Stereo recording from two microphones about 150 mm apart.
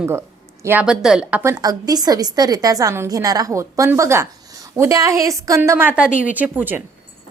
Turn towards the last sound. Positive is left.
turn(degrees=-10)  # may be behind; listen again after turning